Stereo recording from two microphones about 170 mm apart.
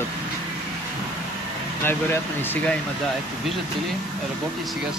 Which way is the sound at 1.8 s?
10° left (ahead or behind).